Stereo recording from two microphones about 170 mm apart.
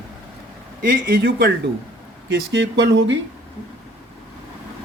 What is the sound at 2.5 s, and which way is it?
Speech, 80° right.